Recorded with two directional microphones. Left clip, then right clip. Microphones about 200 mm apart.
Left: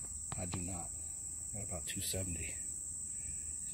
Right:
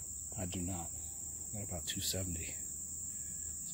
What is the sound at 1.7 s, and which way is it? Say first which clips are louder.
Speech: right 3 dB; centre (ahead or behind).